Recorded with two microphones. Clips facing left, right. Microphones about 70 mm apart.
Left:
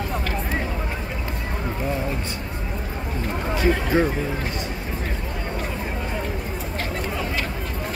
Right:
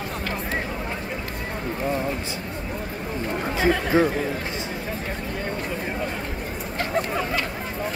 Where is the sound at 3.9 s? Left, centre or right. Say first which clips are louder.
Right 2 dB; right.